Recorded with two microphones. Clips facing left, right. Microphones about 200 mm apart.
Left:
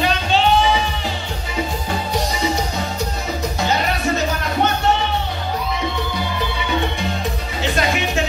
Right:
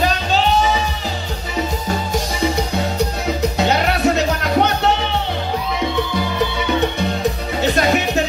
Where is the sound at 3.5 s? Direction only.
65° right (ahead or behind).